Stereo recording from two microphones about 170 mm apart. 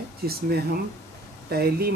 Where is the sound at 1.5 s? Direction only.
65° right (ahead or behind).